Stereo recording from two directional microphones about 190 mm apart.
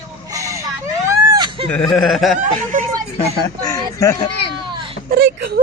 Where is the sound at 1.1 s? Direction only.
20° right (ahead or behind).